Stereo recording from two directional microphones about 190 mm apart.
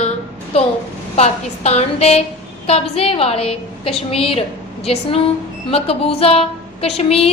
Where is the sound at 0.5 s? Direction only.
30° left (ahead or behind).